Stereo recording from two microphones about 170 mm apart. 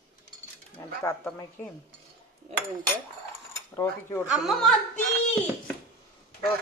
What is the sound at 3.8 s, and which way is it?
Speech, 15° left (ahead or behind).